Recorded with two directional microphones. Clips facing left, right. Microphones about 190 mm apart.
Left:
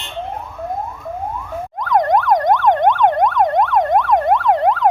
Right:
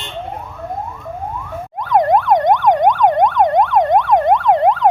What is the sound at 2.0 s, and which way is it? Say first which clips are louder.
Emergency vehicle: right 2 dB; 5° right (ahead or behind).